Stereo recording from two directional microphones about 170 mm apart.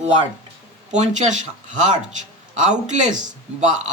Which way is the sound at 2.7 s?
45° right (ahead or behind).